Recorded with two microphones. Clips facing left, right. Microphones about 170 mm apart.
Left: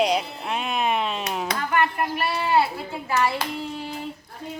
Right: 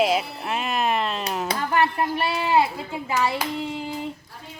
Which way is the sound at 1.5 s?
30° right (ahead or behind).